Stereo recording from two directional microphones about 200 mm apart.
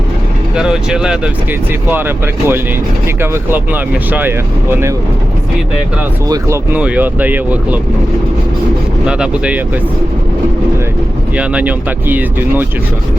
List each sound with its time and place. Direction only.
0.5 s speech: 5° right (ahead or behind)
6.2 s speech: 20° right (ahead or behind)
6.7 s speech: 5° right (ahead or behind)
9.0 s speech: 5° right (ahead or behind)
11.3 s speech: 5° right (ahead or behind)